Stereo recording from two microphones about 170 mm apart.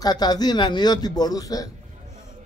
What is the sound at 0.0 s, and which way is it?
Speech, 25° left (ahead or behind).